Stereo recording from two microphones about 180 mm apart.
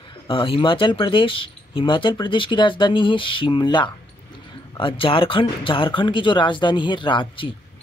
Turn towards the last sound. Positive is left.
turn(degrees=30)  # may be behind; listen again after turning